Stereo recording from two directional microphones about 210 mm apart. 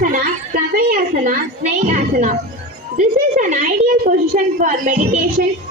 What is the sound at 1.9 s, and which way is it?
A child's voice, 40° right (ahead or behind).